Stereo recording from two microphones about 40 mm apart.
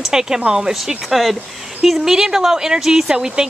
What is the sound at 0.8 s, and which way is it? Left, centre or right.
A woman's voice, centre.